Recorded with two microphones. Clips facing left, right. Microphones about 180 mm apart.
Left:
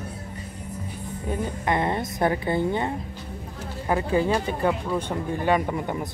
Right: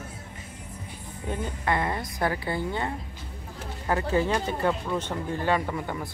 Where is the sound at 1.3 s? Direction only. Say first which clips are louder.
Left 2 dB; 20° left (ahead or behind).